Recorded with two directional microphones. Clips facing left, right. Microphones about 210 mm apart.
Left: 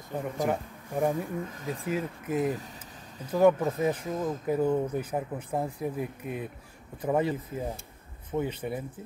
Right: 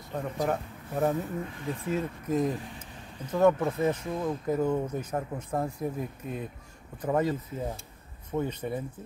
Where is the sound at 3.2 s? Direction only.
10° left (ahead or behind).